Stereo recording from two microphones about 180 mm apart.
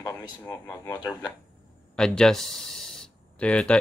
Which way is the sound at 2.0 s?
5° left (ahead or behind).